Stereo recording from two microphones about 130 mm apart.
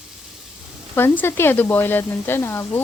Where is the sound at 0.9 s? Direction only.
15° left (ahead or behind).